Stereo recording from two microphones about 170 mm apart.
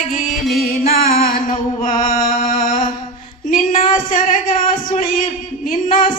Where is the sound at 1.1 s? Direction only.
55° left (ahead or behind).